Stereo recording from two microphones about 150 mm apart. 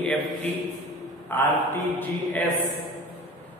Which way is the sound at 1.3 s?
15° left (ahead or behind).